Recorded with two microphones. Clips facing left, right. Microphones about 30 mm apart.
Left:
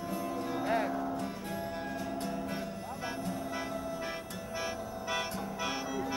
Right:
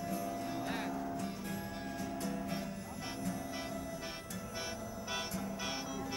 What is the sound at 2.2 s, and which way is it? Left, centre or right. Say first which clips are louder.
Music: left 3 dB; left.